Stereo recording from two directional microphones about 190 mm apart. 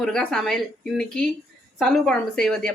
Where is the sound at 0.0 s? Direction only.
5° left (ahead or behind).